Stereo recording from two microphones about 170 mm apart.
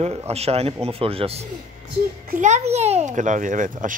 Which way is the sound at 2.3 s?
45° right (ahead or behind).